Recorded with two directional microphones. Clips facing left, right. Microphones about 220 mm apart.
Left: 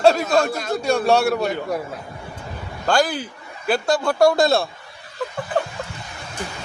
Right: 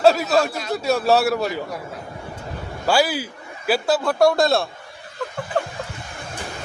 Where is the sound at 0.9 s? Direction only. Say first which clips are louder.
Even; 5° right (ahead or behind).